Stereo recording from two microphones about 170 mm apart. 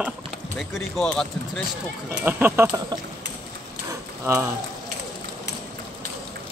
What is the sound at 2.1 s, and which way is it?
Speech, 10° right (ahead or behind).